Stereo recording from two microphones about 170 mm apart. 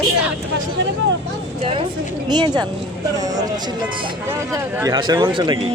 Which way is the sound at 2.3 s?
25° right (ahead or behind).